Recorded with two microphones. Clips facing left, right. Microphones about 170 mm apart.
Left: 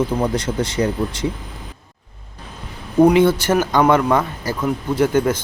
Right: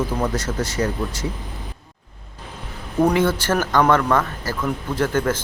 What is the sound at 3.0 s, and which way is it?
Speech, 10° left (ahead or behind).